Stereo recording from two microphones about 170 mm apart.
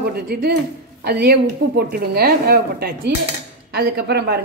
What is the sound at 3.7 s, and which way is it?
Speech, 75° right (ahead or behind).